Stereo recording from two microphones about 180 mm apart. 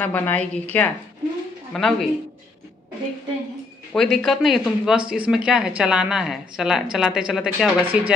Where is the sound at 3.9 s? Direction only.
5° left (ahead or behind).